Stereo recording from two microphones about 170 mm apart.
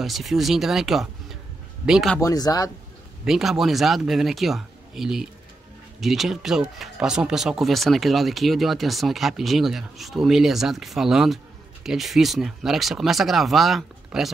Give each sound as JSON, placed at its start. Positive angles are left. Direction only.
{"t": 0.0, "sound": "speech", "side_deg": 0}
{"t": 2.1, "sound": "speech", "side_deg": 20}
{"t": 3.3, "sound": "speech", "side_deg": -5}